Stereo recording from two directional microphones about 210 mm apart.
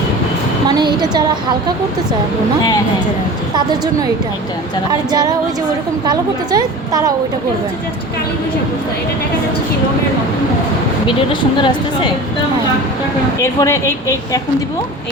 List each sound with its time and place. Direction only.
0.7 s a woman's voice: 20° right (ahead or behind)
4.9 s a woman's voice: 20° right (ahead or behind)
11.5 s speech: 20° left (ahead or behind)
13.4 s a woman's voice: 15° left (ahead or behind)